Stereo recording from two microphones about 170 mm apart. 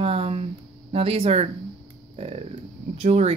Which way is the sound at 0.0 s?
35° right (ahead or behind).